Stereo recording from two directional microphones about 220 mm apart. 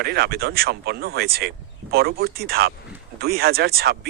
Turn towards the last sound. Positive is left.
turn(degrees=-45)  # may be behind; listen again after turning